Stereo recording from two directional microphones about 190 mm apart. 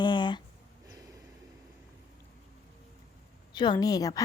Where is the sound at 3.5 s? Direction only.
20° left (ahead or behind).